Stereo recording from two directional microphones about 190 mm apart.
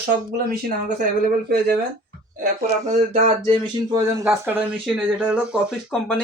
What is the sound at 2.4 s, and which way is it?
Speech, 40° right (ahead or behind).